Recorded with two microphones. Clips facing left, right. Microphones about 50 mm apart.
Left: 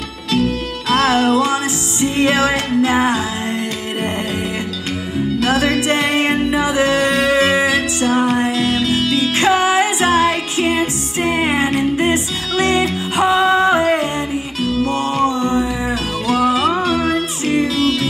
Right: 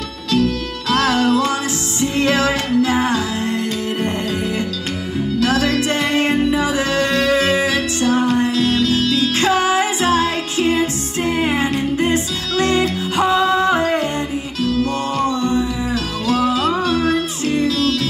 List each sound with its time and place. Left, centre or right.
0.3 s music: left
5.4 s music: centre